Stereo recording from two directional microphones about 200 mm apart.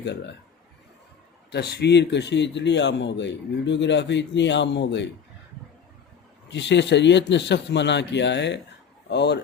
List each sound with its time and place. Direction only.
0.0 s a man's voice: 60° left (ahead or behind)
1.5 s a man's voice: 55° left (ahead or behind)
6.5 s a man's voice: 60° left (ahead or behind)